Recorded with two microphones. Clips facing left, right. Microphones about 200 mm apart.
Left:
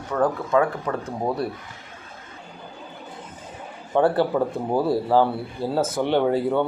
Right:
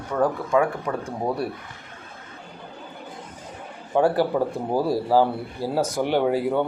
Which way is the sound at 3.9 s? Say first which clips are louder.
Left 1 dB; 10° right (ahead or behind).